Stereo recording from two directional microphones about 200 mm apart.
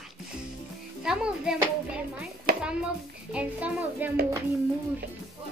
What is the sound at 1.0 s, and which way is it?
Speech, 5° right (ahead or behind).